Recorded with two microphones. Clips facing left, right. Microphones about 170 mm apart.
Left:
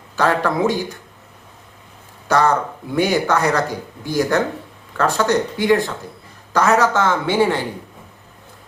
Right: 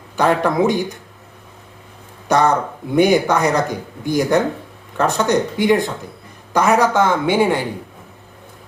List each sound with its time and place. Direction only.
0.2 s speech: 15° right (ahead or behind)
2.2 s speech: 20° right (ahead or behind)